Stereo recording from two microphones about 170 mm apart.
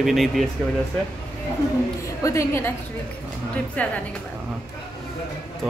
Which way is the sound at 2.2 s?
15° left (ahead or behind).